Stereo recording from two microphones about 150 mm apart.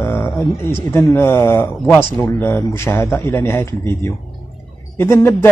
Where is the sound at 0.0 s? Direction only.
15° left (ahead or behind).